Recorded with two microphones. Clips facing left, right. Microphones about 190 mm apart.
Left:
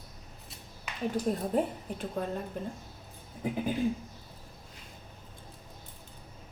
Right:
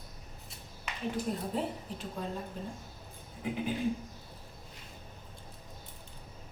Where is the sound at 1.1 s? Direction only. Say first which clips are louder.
Left 6 dB; 50° left (ahead or behind).